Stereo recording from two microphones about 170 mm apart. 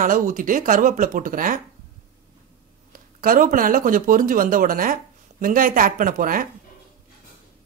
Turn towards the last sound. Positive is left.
turn(degrees=-55)  # may be behind; listen again after turning